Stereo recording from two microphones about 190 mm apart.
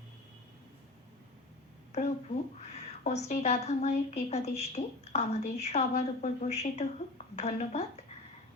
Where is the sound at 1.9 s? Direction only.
35° left (ahead or behind).